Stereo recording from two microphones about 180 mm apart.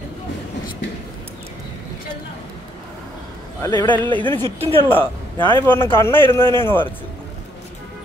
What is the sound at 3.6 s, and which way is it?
Speech, 20° left (ahead or behind).